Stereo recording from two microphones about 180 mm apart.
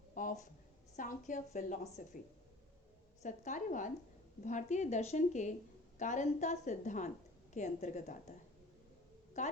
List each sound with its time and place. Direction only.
0.1 s a sound: 50° left (ahead or behind)
0.9 s a woman's voice: 45° left (ahead or behind)
3.2 s a woman's voice: 45° left (ahead or behind)
9.4 s a woman's voice: 40° left (ahead or behind)